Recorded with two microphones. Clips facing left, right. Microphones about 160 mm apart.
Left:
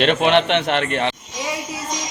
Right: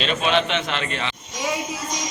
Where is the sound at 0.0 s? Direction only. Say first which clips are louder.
Left 5 dB; 65° left (ahead or behind).